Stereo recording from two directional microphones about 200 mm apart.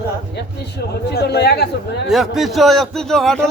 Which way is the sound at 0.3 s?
55° left (ahead or behind).